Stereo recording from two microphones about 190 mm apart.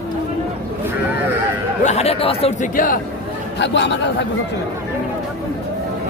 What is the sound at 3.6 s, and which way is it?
Speech, 65° left (ahead or behind).